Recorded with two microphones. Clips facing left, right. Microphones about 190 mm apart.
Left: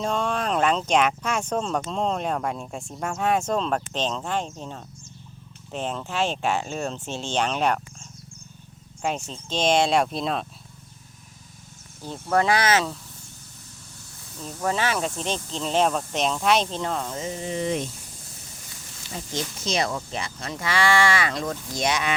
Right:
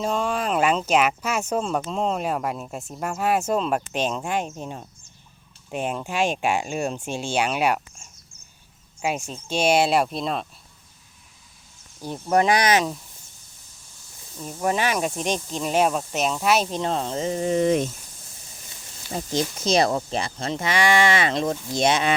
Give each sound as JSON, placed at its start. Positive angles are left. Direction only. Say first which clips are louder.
{"t": 0.0, "sound": "speech", "louder": "right 1 dB", "side_deg": -5}
{"t": 12.0, "sound": "speech", "louder": "right 2 dB", "side_deg": -15}
{"t": 14.4, "sound": "speech", "louder": "right 2 dB", "side_deg": -15}
{"t": 19.1, "sound": "speech", "louder": "right 6 dB", "side_deg": -40}